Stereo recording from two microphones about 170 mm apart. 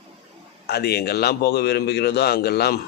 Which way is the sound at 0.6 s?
70° left (ahead or behind).